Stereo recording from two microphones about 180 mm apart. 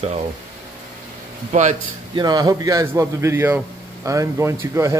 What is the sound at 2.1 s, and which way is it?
A man's voice, 20° right (ahead or behind).